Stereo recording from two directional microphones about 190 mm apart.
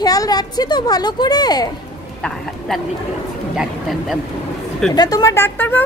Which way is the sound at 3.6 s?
Centre (ahead or behind).